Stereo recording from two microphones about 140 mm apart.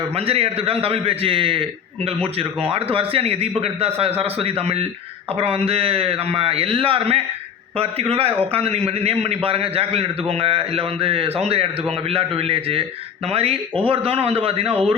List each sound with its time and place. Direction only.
0.1 s a man's voice: 45° right (ahead or behind)